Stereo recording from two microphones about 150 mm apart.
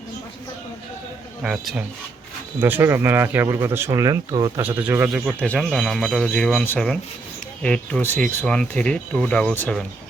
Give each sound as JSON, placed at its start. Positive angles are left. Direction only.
{"t": 1.4, "sound": "a man's voice", "side_deg": -5}
{"t": 4.6, "sound": "speech", "side_deg": -10}
{"t": 5.4, "sound": "a man's voice", "side_deg": 5}